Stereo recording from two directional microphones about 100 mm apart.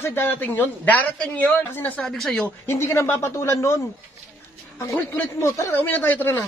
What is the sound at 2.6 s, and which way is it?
A man's voice, 25° left (ahead or behind).